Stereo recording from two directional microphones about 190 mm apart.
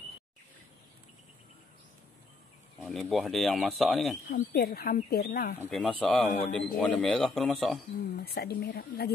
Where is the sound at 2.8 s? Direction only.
Centre (ahead or behind).